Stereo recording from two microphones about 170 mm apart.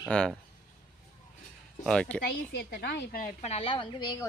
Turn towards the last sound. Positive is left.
turn(degrees=30)  # may be behind; listen again after turning